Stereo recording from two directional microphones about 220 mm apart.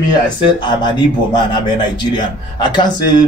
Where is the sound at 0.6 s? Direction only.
20° left (ahead or behind).